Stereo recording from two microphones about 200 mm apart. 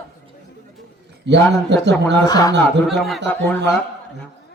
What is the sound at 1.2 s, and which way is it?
Speech, 60° right (ahead or behind).